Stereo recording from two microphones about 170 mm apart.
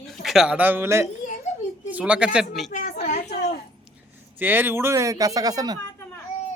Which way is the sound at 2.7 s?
50° left (ahead or behind).